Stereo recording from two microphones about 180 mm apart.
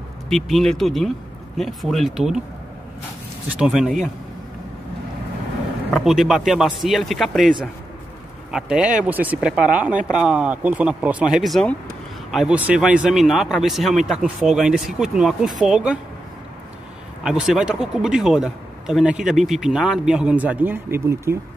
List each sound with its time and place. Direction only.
0.3 s speech: centre (ahead or behind)
3.5 s speech: 5° right (ahead or behind)
5.9 s speech: centre (ahead or behind)
17.2 s speech: 5° right (ahead or behind)